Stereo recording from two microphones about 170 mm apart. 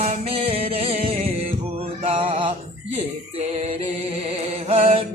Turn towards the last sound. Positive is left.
turn(degrees=-35)  # may be behind; listen again after turning